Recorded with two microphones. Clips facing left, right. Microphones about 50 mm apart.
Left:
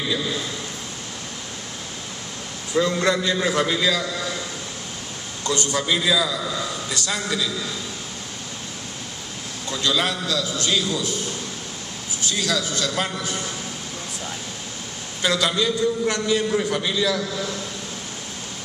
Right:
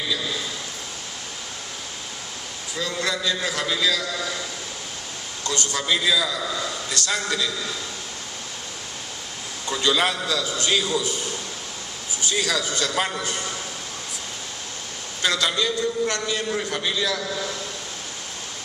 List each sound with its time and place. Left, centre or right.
2.7 s a man's voice: left
5.5 s a man's voice: left
5.8 s a man's voice: centre
9.7 s a man's voice: centre
12.2 s a man's voice: centre
15.2 s a man's voice: centre